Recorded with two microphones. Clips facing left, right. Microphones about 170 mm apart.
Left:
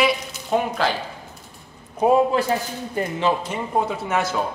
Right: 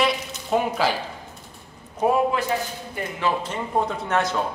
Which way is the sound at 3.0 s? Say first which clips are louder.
Left 6 dB; 35° left (ahead or behind).